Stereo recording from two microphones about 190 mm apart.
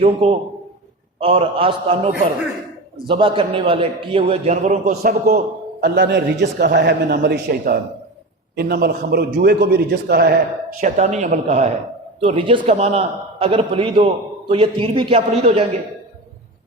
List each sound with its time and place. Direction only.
0.0 s a man's voice: 30° right (ahead or behind); by 10.3 s 55° right (ahead or behind)
10.8 s a man's voice: 40° right (ahead or behind)